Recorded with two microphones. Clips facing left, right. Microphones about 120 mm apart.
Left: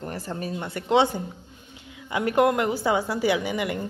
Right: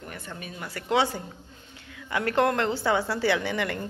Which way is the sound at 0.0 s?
35° left (ahead or behind).